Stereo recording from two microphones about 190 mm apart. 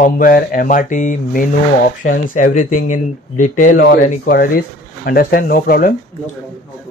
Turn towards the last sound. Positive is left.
turn(degrees=50)  # may be behind; listen again after turning